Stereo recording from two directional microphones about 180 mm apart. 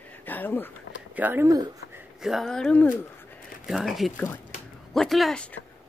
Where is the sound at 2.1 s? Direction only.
Centre (ahead or behind).